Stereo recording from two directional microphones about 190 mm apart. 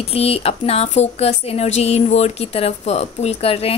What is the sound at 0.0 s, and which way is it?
Speech, 30° left (ahead or behind).